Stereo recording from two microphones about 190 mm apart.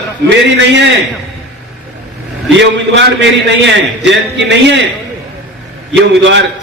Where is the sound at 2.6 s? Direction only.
70° right (ahead or behind).